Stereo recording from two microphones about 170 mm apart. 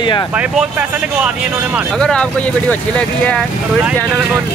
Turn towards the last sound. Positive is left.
turn(degrees=5)  # may be behind; listen again after turning